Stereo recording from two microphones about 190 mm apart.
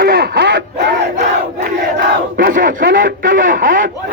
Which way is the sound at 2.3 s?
50° right (ahead or behind).